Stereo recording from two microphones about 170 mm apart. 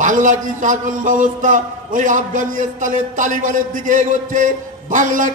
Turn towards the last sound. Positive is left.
turn(degrees=-50)  # may be behind; listen again after turning